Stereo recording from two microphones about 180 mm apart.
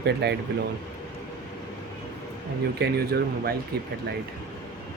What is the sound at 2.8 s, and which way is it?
Speech, 65° right (ahead or behind).